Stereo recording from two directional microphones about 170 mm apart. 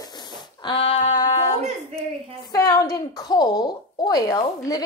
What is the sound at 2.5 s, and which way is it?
A woman's voice, 20° left (ahead or behind).